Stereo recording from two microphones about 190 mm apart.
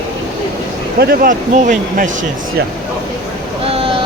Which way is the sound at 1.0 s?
50° right (ahead or behind).